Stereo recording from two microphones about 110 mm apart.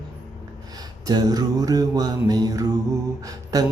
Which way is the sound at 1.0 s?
35° right (ahead or behind).